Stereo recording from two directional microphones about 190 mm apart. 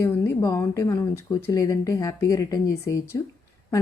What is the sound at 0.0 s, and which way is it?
Speech, 15° left (ahead or behind).